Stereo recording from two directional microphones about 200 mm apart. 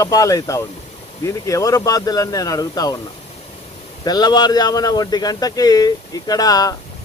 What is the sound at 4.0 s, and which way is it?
Speech, 20° left (ahead or behind).